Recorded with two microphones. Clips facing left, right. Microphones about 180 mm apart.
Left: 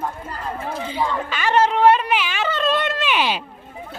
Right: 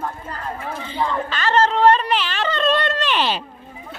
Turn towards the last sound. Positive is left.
turn(degrees=10)  # may be behind; listen again after turning